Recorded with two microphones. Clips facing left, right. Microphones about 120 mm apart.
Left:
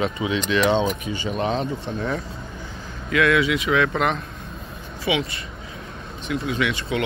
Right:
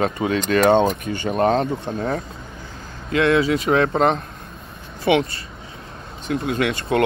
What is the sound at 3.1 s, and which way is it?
Speech, 30° right (ahead or behind).